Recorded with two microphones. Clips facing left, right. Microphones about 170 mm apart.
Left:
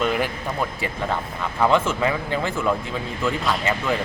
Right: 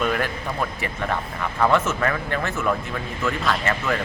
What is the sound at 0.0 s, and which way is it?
A man's voice, 15° left (ahead or behind).